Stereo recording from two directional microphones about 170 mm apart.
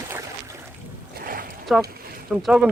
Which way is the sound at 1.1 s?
60° right (ahead or behind).